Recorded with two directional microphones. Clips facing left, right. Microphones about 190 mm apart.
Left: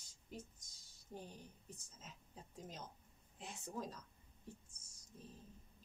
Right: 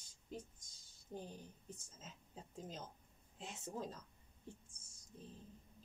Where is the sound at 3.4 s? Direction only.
25° right (ahead or behind).